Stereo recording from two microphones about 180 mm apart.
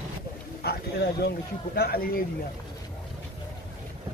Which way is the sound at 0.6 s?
65° left (ahead or behind).